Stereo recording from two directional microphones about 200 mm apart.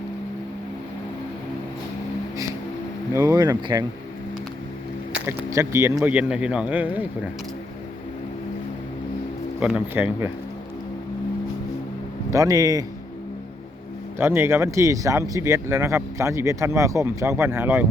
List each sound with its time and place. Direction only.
3.1 s speech: 15° right (ahead or behind)
5.1 s speech: 15° right (ahead or behind)
9.6 s speech: 5° right (ahead or behind)
12.3 s speech: 15° right (ahead or behind)
14.2 s speech: 10° right (ahead or behind)